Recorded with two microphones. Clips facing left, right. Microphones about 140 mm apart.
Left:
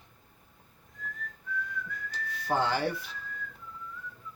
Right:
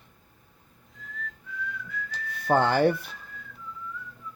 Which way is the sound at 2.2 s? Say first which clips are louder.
Right 6 dB; 55° right (ahead or behind).